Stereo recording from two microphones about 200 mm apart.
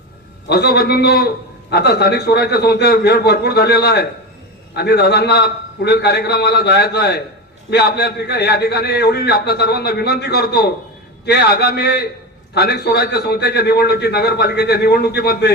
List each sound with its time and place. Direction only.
0.4 s a man's voice: 55° left (ahead or behind)